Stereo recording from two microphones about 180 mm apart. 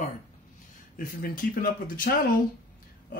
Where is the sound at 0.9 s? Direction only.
50° left (ahead or behind).